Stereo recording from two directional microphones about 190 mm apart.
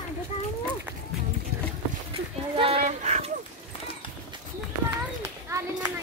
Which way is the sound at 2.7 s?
40° right (ahead or behind).